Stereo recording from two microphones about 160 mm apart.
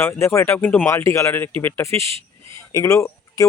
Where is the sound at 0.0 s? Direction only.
15° left (ahead or behind).